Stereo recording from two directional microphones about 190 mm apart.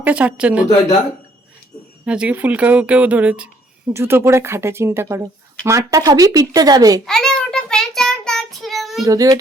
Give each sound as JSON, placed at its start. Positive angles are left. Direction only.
{"t": 0.0, "sound": "speech", "side_deg": -5}
{"t": 2.0, "sound": "speech", "side_deg": -5}
{"t": 7.0, "sound": "child singing", "side_deg": 5}
{"t": 9.0, "sound": "speech", "side_deg": -20}